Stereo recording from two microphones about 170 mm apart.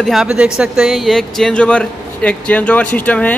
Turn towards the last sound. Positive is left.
turn(degrees=10)  # may be behind; listen again after turning